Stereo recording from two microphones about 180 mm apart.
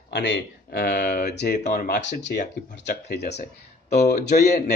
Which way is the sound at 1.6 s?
45° left (ahead or behind).